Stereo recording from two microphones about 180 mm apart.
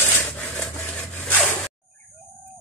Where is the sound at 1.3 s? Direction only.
10° left (ahead or behind).